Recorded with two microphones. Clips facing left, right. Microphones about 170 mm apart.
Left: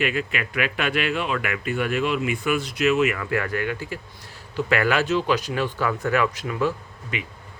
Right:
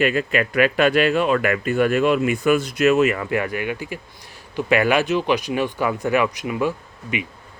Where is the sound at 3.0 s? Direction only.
30° right (ahead or behind).